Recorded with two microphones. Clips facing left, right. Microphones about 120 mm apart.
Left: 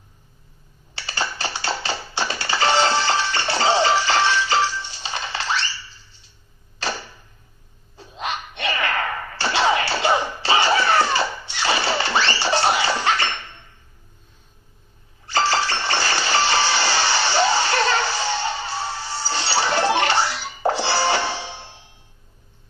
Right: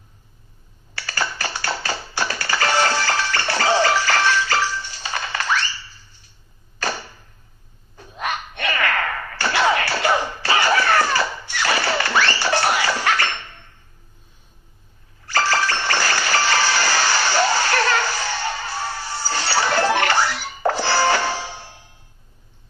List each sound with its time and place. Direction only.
0.9 s tap: 20° left (ahead or behind)
8.0 s a sound: 25° left (ahead or behind)
15.2 s chink: 25° left (ahead or behind)
21.3 s music: 20° left (ahead or behind)